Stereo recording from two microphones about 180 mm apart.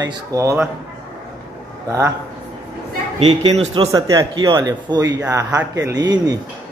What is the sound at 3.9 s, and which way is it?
Speech, 20° right (ahead or behind).